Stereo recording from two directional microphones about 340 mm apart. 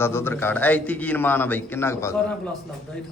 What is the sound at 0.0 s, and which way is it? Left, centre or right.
A man's voice, centre.